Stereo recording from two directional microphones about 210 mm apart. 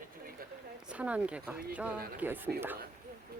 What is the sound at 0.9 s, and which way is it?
Speech, 5° right (ahead or behind).